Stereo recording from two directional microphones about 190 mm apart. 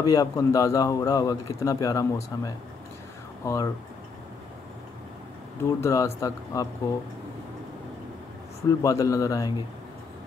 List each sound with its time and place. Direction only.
0.0 s a man's voice: 20° left (ahead or behind)
5.6 s a man's voice: 15° left (ahead or behind)
8.6 s a man's voice: 15° left (ahead or behind)